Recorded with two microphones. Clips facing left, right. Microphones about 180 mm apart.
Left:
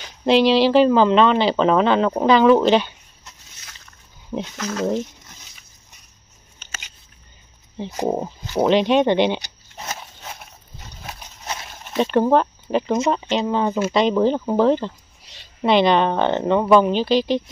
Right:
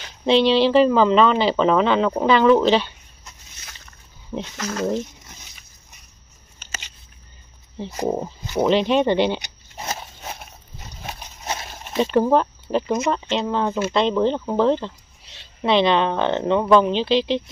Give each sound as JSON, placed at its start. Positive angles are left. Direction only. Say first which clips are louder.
{"t": 0.2, "sound": "speech", "louder": "left 1 dB", "side_deg": 0}
{"t": 4.3, "sound": "speech", "louder": "left 1 dB", "side_deg": 0}
{"t": 7.9, "sound": "speech", "louder": "left 1 dB", "side_deg": 10}
{"t": 8.6, "sound": "speech", "louder": "left 2 dB", "side_deg": 0}
{"t": 11.1, "sound": "a sound", "louder": "right 2 dB", "side_deg": -25}
{"t": 12.0, "sound": "a woman's voice", "louder": "left 1 dB", "side_deg": 0}